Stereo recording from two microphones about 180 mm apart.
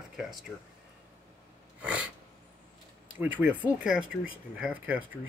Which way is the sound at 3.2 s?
10° right (ahead or behind).